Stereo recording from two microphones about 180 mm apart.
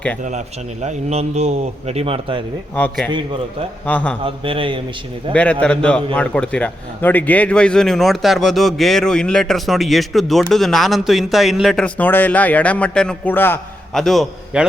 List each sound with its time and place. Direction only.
0.3 s a man's voice: 40° right (ahead or behind)
2.7 s a man's voice: 10° left (ahead or behind)
4.2 s a man's voice: 30° right (ahead or behind)
5.3 s a man's voice: 5° left (ahead or behind)
13.9 s a man's voice: centre (ahead or behind)